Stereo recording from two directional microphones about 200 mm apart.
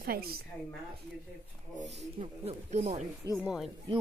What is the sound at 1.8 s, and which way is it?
Speech, 35° right (ahead or behind).